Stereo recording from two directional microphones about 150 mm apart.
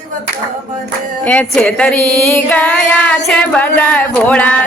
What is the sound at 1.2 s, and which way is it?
Female singing, 10° left (ahead or behind).